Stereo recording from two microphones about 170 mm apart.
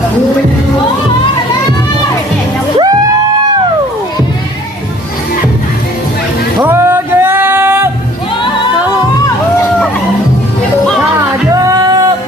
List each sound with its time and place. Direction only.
2.7 s music: 20° right (ahead or behind)
6.7 s music: 15° right (ahead or behind)
11.2 s music: 20° right (ahead or behind)